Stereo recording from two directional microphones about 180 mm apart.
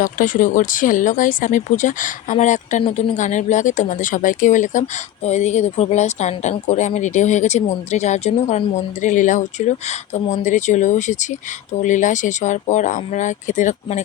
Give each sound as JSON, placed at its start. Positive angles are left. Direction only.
{"t": 0.0, "sound": "speech", "side_deg": 45}